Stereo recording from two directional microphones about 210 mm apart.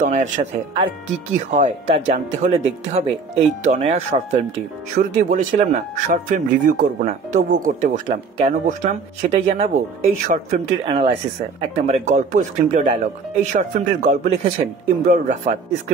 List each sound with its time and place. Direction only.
0.0 s speech: 35° right (ahead or behind)